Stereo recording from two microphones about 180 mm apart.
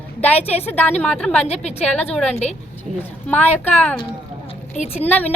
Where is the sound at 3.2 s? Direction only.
10° left (ahead or behind).